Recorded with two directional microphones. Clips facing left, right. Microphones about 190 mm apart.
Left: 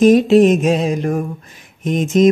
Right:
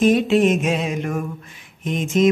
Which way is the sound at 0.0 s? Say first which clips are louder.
Left 6 dB; 40° left (ahead or behind).